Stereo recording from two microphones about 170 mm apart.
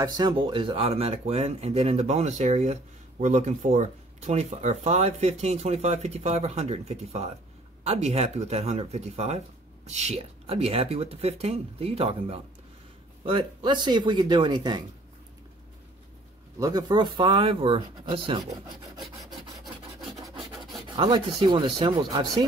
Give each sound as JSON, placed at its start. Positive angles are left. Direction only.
{"t": 0.0, "sound": "speech", "side_deg": -25}
{"t": 16.5, "sound": "speech", "side_deg": -20}
{"t": 19.3, "sound": "filing", "side_deg": 0}
{"t": 20.9, "sound": "speech", "side_deg": -25}